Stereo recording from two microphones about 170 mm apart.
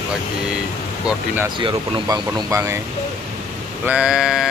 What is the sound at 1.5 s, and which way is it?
Speech, 25° right (ahead or behind).